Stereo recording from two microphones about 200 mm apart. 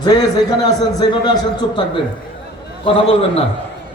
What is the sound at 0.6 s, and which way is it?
A man's voice, 20° left (ahead or behind).